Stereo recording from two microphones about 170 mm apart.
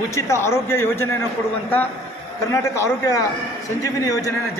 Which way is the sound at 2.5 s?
20° left (ahead or behind).